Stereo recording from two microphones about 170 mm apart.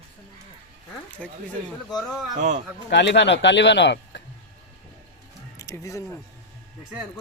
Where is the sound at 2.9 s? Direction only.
90° left.